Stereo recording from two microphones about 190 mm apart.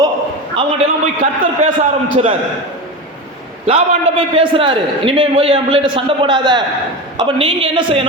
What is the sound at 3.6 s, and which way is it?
A man's voice, 30° right (ahead or behind).